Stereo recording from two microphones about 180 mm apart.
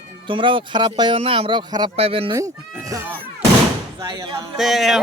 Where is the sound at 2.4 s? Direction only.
20° right (ahead or behind).